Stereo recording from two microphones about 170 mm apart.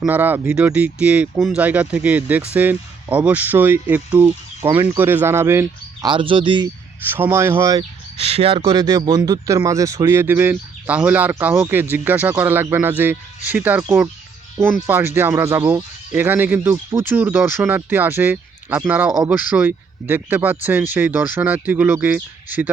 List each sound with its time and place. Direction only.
0.0 s speech: 10° right (ahead or behind)
6.1 s speech: 30° right (ahead or behind)
7.1 s speech: 15° right (ahead or behind)
8.2 s speech: 35° right (ahead or behind)
8.7 s speech: 25° right (ahead or behind)